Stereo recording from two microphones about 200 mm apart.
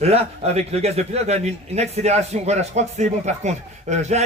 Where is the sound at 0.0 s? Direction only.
30° right (ahead or behind).